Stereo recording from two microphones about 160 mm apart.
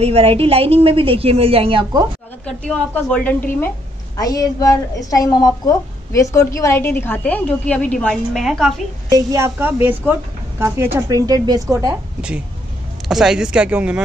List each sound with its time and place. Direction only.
0.0 s a woman's voice: 40° right (ahead or behind)
2.4 s a woman's voice: 10° left (ahead or behind)
4.2 s a woman's voice: 20° left (ahead or behind); by 8.7 s centre (ahead or behind)
9.1 s a woman's voice: 20° right (ahead or behind)
12.2 s a woman's voice: 5° right (ahead or behind)